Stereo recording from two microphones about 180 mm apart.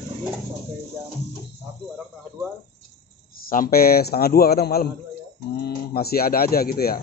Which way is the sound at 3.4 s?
55° left (ahead or behind).